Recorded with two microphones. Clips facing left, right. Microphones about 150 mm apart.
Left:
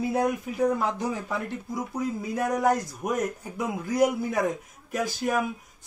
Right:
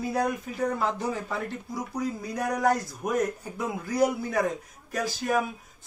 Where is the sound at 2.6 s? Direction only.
20° left (ahead or behind).